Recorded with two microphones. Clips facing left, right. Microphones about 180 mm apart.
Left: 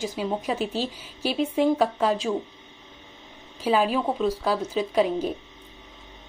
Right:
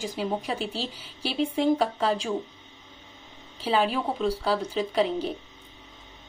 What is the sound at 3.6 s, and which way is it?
Speech, 10° left (ahead or behind).